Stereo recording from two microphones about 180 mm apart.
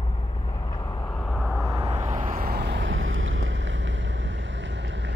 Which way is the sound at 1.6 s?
20° right (ahead or behind).